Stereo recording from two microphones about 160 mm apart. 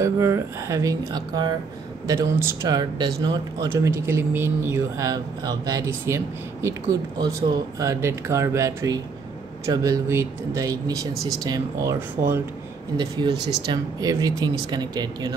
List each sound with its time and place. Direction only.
0.0 s speech: 20° right (ahead or behind)
3.7 s speech: 15° right (ahead or behind)